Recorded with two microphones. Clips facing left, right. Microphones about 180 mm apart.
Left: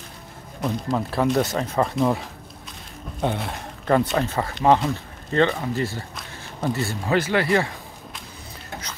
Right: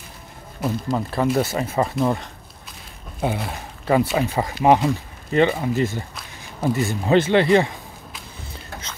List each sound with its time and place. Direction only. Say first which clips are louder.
0.6 s speech: right 1 dB; 5° right (ahead or behind); by 7.7 s 20° right (ahead or behind)